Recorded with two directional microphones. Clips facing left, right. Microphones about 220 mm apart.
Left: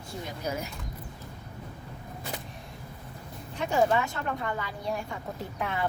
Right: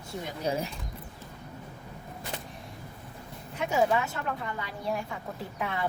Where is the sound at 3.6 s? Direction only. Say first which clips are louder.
Left 1 dB; 5° right (ahead or behind).